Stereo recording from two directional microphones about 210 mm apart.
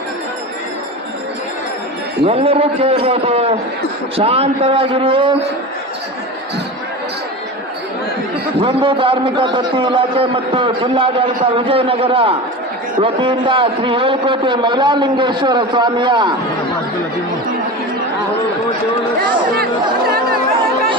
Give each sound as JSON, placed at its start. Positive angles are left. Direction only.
{"t": 2.2, "sound": "a man's voice", "side_deg": -30}
{"t": 8.6, "sound": "a man's voice", "side_deg": -25}